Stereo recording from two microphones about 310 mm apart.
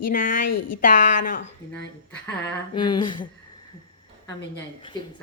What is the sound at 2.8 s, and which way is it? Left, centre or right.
Speech, centre.